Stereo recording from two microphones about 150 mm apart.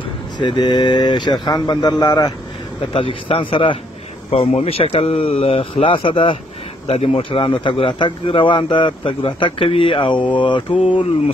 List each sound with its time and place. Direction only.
0.4 s speech: 30° left (ahead or behind)
2.9 s speech: 35° left (ahead or behind)
4.3 s speech: 45° left (ahead or behind)